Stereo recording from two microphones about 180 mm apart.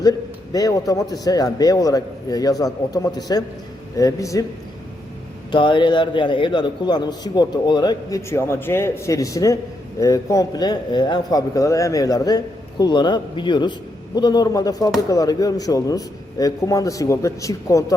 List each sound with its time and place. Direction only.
0.0 s a man's voice: 20° left (ahead or behind)
5.5 s a man's voice: 25° left (ahead or behind)